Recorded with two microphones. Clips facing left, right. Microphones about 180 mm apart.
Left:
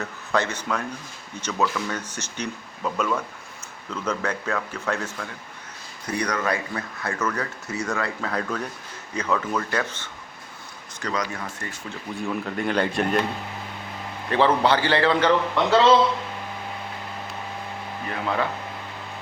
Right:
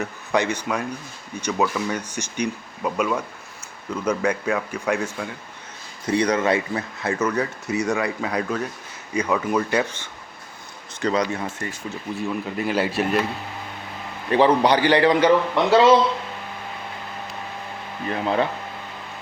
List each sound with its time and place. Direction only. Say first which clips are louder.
0.0 s a man's voice: right 3 dB; 15° right (ahead or behind)
11.0 s speech: right 6 dB; 30° right (ahead or behind)
12.1 s a man's voice: right 1 dB; 5° right (ahead or behind)
14.3 s a man's voice: right 3 dB; 15° right (ahead or behind)
18.1 s speech: right 4 dB; 25° right (ahead or behind)